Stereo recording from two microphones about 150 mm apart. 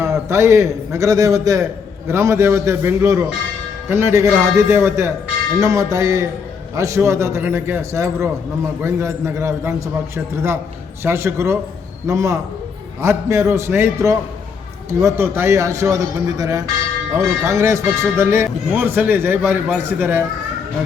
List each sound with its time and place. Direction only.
0.0 s a man's voice: 20° right (ahead or behind)